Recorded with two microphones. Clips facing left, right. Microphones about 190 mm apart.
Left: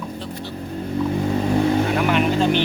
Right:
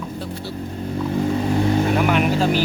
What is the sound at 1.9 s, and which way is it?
Speech, 5° right (ahead or behind).